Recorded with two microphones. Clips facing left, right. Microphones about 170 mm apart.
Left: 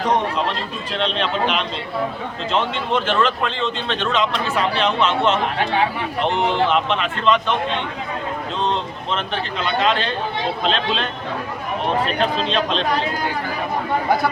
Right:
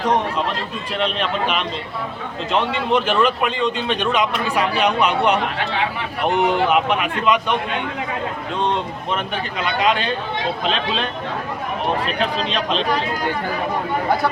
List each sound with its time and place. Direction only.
0.9 s a man's voice: 5° right (ahead or behind)
8.7 s a man's voice: 10° right (ahead or behind)
12.2 s speech: centre (ahead or behind)